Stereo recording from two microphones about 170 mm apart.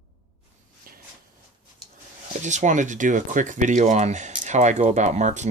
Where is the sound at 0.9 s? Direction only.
55° right (ahead or behind).